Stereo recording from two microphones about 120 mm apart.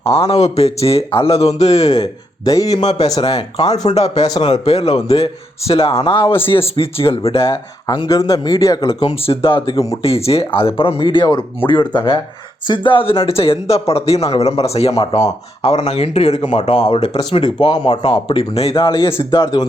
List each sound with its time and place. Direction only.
0.2 s speech: 60° left (ahead or behind)
1.9 s speech: 30° left (ahead or behind)
3.2 s speech: 55° left (ahead or behind)
7.9 s speech: 35° left (ahead or behind)
9.0 s speech: 50° left (ahead or behind)
17.3 s speech: 40° left (ahead or behind)
18.3 s speech: 55° left (ahead or behind)
19.1 s speech: 25° left (ahead or behind)